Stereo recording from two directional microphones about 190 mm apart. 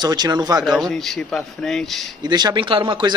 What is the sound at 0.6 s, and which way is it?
A man's voice, centre (ahead or behind).